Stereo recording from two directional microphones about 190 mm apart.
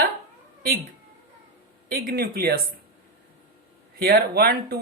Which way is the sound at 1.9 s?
55° right (ahead or behind).